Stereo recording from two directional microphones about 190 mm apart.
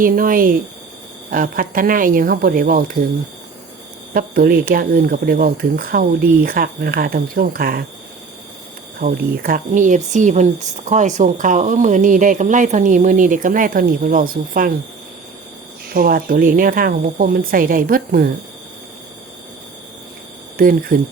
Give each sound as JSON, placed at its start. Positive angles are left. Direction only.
{"t": 0.0, "sound": "speech", "side_deg": -45}
{"t": 4.1, "sound": "speech", "side_deg": -50}
{"t": 9.0, "sound": "speech", "side_deg": -50}
{"t": 15.9, "sound": "speech", "side_deg": -50}
{"t": 20.6, "sound": "speech", "side_deg": -45}